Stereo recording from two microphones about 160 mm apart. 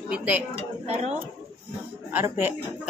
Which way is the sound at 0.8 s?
40° right (ahead or behind).